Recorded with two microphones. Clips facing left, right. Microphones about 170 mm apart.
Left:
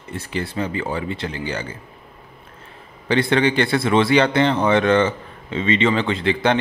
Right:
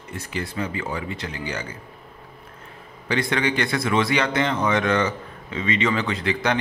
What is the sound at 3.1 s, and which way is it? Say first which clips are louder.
Speech: left 5 dB; 30° left (ahead or behind).